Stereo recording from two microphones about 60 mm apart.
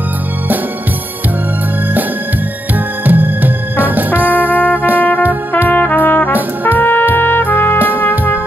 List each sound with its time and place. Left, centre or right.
3.1 s music: right
5.7 s trumpet: left